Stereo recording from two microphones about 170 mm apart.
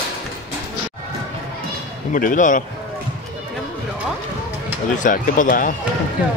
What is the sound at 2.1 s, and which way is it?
Speech, 50° left (ahead or behind).